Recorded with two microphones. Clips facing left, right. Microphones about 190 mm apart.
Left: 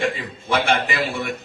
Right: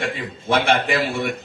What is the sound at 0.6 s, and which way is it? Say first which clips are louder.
Speech: right 2 dB; 55° right (ahead or behind).